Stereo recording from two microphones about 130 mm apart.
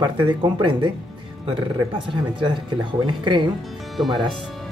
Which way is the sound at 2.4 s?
35° right (ahead or behind).